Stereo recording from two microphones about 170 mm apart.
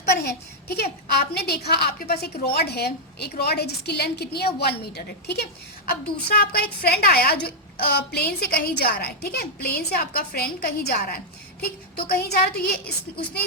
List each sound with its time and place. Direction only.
0.1 s a woman's voice: 70° left (ahead or behind)